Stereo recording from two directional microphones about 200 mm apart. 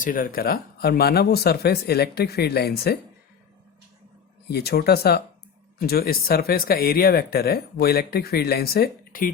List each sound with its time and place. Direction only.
0.0 s speech: 45° left (ahead or behind)
4.4 s speech: 55° left (ahead or behind)